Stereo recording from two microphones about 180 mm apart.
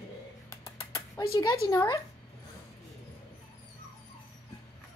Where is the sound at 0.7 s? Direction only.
15° left (ahead or behind).